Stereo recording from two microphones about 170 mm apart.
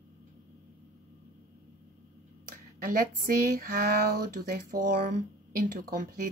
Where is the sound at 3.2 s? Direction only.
60° right (ahead or behind).